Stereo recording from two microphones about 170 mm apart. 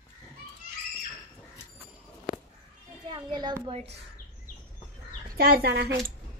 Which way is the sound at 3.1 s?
25° right (ahead or behind).